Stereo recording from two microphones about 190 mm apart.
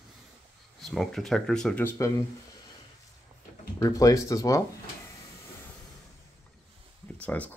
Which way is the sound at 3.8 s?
20° left (ahead or behind).